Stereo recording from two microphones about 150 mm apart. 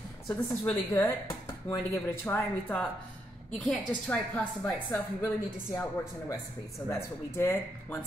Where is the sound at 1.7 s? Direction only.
15° left (ahead or behind).